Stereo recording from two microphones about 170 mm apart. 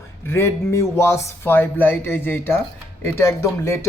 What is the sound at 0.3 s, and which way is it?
Speech, 15° left (ahead or behind).